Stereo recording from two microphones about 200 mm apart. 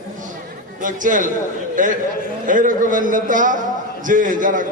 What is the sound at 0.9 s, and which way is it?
A man's voice, 40° right (ahead or behind).